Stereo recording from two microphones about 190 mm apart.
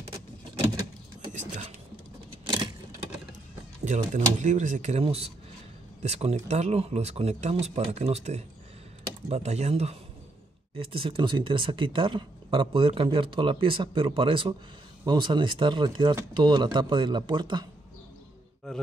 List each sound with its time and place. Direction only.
1.3 s speech: 40° right (ahead or behind)
3.8 s speech: 40° right (ahead or behind); by 17.6 s 25° right (ahead or behind)